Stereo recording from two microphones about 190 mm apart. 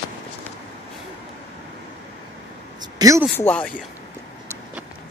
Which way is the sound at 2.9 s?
20° right (ahead or behind).